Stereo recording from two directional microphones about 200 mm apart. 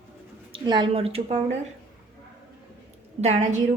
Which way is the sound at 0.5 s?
25° right (ahead or behind).